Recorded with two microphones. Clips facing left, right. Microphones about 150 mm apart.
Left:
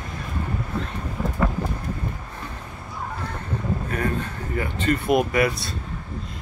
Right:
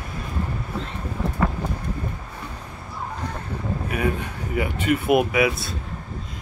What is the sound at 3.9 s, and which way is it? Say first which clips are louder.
Speech: right 4 dB; 10° right (ahead or behind).